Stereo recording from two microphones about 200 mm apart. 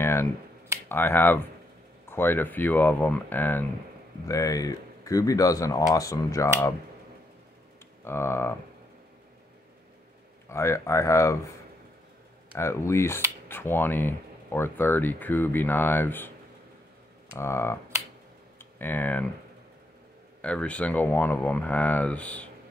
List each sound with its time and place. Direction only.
0.0 s finger snapping: 10° left (ahead or behind)
0.8 s speech: 10° left (ahead or behind)
8.0 s speech: 10° left (ahead or behind)
10.5 s speech: 15° left (ahead or behind)
12.5 s speech: 15° left (ahead or behind)
20.4 s speech: 5° left (ahead or behind)